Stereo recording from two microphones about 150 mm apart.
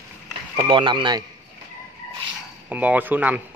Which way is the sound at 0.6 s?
35° right (ahead or behind).